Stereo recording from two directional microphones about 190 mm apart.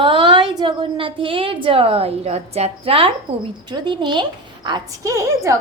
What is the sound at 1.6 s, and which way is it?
A woman's voice, 30° right (ahead or behind).